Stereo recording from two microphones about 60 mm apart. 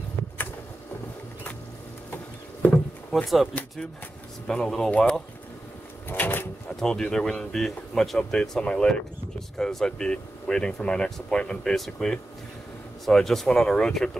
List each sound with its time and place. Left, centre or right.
3.1 s speech: centre
4.5 s speech: centre
6.0 s a sound: left
6.8 s speech: centre